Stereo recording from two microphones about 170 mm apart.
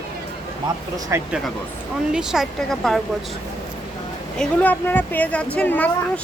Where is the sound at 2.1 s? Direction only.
5° right (ahead or behind).